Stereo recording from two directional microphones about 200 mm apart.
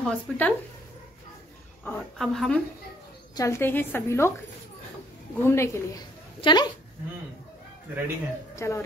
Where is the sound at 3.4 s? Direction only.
15° left (ahead or behind).